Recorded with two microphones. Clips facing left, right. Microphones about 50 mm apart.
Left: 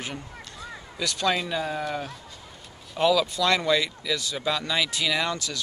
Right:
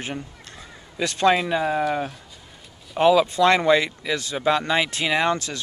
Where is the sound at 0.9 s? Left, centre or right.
Right.